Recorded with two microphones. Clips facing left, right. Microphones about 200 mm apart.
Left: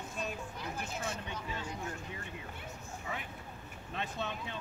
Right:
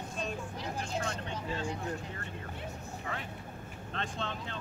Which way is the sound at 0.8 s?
5° left (ahead or behind).